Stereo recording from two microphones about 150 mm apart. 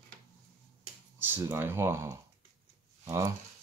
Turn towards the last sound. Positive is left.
turn(degrees=-20)  # may be behind; listen again after turning